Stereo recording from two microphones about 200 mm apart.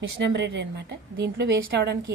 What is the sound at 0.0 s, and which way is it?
A woman's voice, 60° right (ahead or behind).